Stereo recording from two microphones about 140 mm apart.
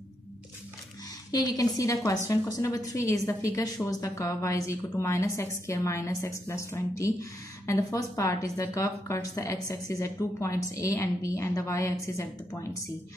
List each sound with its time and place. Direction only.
1.3 s a woman's voice: 25° left (ahead or behind)